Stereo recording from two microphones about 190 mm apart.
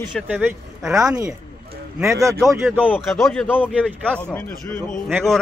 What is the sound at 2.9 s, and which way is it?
A man's voice, centre (ahead or behind).